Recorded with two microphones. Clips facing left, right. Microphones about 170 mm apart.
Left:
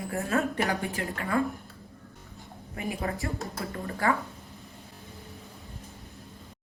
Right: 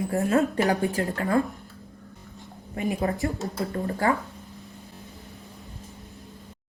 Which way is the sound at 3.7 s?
35° right (ahead or behind).